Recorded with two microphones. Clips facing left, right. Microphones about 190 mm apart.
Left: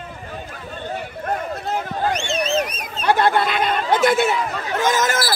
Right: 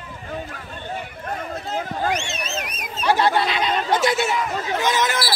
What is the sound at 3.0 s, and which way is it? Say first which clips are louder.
Speech: left 2 dB; 55° left (ahead or behind).